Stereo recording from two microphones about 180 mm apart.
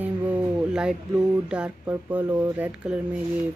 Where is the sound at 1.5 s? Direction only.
10° right (ahead or behind).